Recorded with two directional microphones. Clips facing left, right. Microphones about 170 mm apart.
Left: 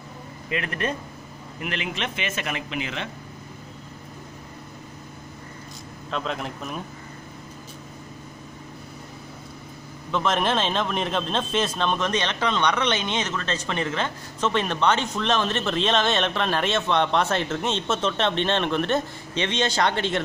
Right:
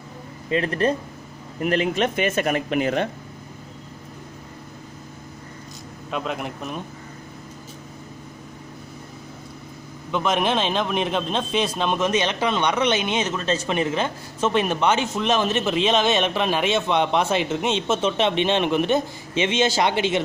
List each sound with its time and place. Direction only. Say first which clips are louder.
0.5 s speech: right 7 dB; 35° right (ahead or behind)
6.0 s a man's voice: right 2 dB; 10° right (ahead or behind)
10.1 s a man's voice: right 2 dB; 5° right (ahead or behind)